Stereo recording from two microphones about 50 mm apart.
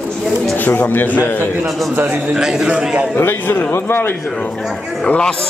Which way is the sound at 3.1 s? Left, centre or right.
Left.